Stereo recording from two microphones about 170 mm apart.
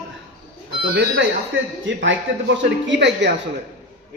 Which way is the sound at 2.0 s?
90° right.